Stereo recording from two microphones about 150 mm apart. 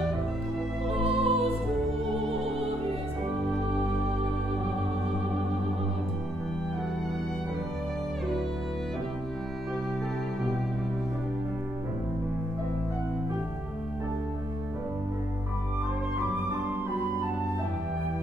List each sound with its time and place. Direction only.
1.2 s music: 40° right (ahead or behind)